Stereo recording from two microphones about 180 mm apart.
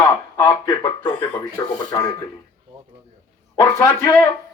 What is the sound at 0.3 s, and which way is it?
Speech, 20° left (ahead or behind).